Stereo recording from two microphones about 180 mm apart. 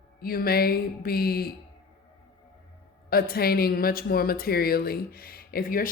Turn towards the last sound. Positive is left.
turn(degrees=55)  # may be behind; listen again after turning